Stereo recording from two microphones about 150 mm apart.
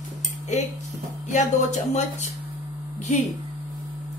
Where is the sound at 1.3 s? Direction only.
50° left (ahead or behind).